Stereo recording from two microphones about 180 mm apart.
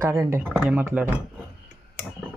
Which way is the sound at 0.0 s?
15° right (ahead or behind).